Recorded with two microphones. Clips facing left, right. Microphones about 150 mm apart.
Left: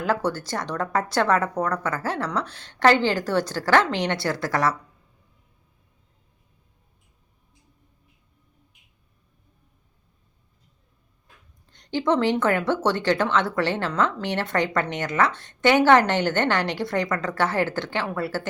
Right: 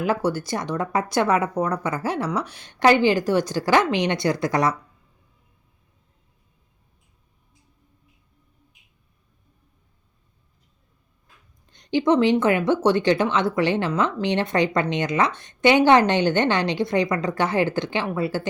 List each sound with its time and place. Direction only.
0.0 s speech: 10° right (ahead or behind)
11.7 s speech: 15° right (ahead or behind)